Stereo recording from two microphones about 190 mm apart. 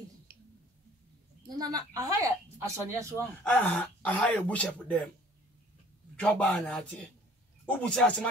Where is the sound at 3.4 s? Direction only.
5° left (ahead or behind).